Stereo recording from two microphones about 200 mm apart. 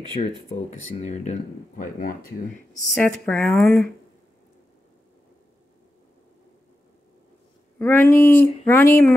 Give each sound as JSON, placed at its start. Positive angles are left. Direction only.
{"t": 0.2, "sound": "speech", "side_deg": 35}
{"t": 2.9, "sound": "speech", "side_deg": 10}
{"t": 7.8, "sound": "speech", "side_deg": 10}